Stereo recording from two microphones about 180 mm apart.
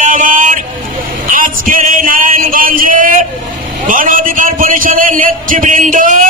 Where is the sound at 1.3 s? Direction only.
50° right (ahead or behind).